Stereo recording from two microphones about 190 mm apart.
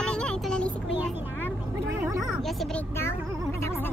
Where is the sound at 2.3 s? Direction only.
Centre (ahead or behind).